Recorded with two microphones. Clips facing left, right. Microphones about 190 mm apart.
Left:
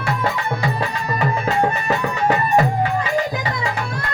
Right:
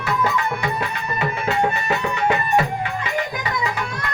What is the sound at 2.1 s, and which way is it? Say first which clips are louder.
Music: left 2 dB; 40° left (ahead or behind).